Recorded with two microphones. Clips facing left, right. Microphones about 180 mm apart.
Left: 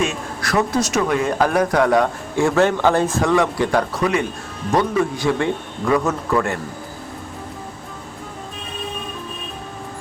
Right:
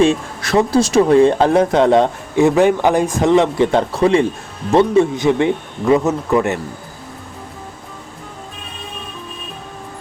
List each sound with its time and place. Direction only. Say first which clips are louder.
0.0 s speech: right 8 dB; 30° right (ahead or behind)